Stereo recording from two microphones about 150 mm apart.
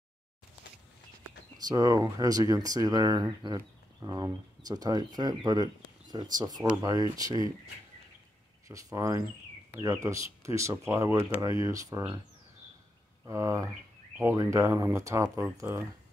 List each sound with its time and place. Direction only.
1.7 s speech: 25° right (ahead or behind)
8.6 s speech: 20° right (ahead or behind)
13.2 s a sound: 20° right (ahead or behind)
14.1 s speech: 20° right (ahead or behind)